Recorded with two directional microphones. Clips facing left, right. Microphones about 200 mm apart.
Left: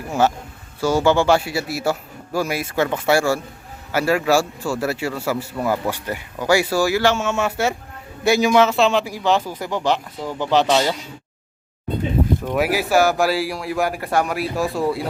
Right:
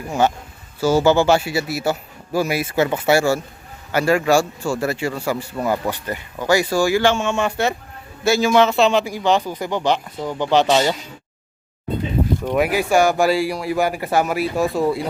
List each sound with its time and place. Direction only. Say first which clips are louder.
0.1 s a man's voice: even; centre (ahead or behind)
8.5 s a man's voice: right 1 dB; centre (ahead or behind)
12.5 s a man's voice: right 1 dB; 5° left (ahead or behind)